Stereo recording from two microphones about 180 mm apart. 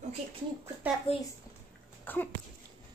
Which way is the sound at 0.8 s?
10° right (ahead or behind).